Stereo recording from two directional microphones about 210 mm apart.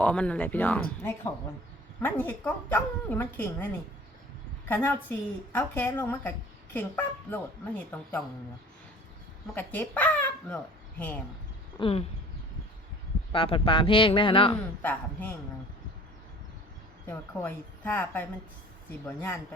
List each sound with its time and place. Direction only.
0.0 s a woman's voice: 5° left (ahead or behind)
4.7 s a woman's voice: 10° left (ahead or behind)
9.6 s a woman's voice: 10° left (ahead or behind)
11.8 s speech: 30° left (ahead or behind)
13.3 s speech: 25° left (ahead or behind)
14.8 s a woman's voice: 10° left (ahead or behind)
17.1 s a woman's voice: 10° left (ahead or behind)